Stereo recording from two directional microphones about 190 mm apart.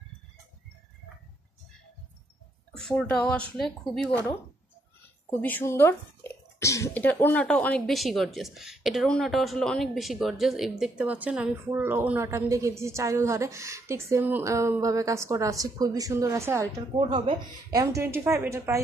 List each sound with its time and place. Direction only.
2.8 s speech: 5° left (ahead or behind)
5.4 s speech: 10° left (ahead or behind); by 18.8 s 15° right (ahead or behind)